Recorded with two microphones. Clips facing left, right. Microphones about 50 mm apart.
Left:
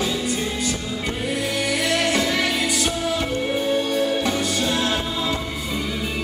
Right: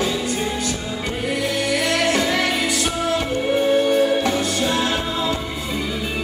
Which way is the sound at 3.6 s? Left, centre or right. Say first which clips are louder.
Right 7 dB; right.